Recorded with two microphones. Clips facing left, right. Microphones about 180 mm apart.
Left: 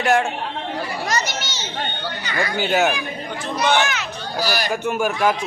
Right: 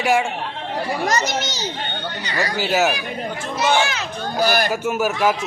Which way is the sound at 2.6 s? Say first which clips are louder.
Even; 5° right (ahead or behind).